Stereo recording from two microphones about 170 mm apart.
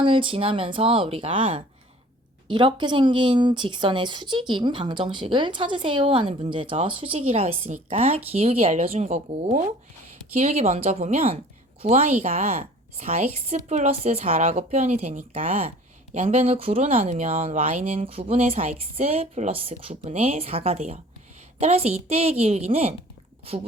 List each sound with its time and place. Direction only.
0.0 s a woman's voice: 30° right (ahead or behind)